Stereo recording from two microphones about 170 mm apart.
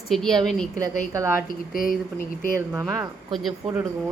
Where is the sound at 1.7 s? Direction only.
55° left (ahead or behind).